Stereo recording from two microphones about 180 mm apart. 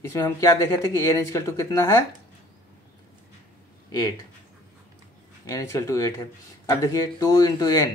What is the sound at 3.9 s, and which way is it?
Speech, 20° left (ahead or behind).